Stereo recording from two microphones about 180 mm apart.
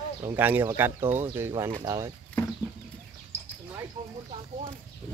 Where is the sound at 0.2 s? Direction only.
15° right (ahead or behind).